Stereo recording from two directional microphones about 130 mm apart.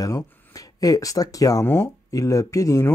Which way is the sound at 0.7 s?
30° left (ahead or behind).